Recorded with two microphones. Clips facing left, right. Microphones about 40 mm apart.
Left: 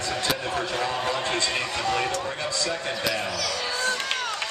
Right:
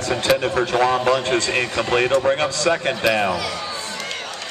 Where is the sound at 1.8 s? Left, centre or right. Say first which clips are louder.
Right 7 dB; right.